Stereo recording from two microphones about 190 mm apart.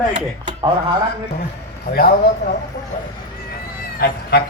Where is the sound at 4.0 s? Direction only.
55° left (ahead or behind).